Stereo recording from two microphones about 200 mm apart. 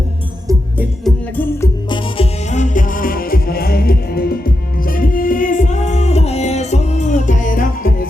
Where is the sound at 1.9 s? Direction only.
30° left (ahead or behind).